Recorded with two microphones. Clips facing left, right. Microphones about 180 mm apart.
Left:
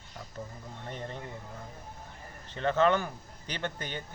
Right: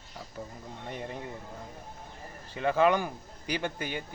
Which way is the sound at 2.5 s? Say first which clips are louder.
Right 1 dB; 10° right (ahead or behind).